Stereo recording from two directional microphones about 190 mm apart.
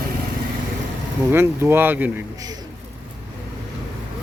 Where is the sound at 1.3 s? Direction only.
10° right (ahead or behind).